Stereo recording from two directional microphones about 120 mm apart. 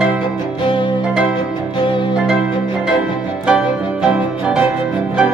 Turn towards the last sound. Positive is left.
turn(degrees=-10)  # may be behind; listen again after turning